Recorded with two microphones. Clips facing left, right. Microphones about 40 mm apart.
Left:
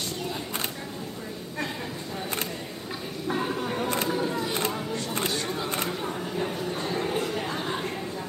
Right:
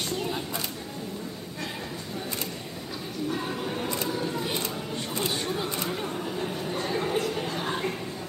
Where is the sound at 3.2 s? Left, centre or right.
Centre.